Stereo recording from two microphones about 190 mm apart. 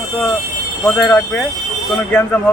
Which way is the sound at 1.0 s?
5° left (ahead or behind).